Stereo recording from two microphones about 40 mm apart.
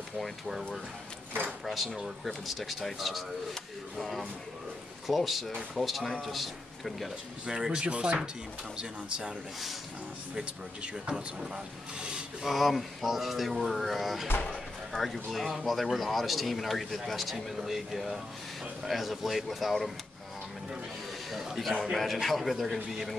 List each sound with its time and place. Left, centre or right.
0.2 s speech: centre
2.2 s speech: centre
5.0 s a man's voice: centre
7.4 s speech: centre
10.3 s speech: right
12.4 s speech: centre
21.3 s a sound: centre
21.9 s speech: centre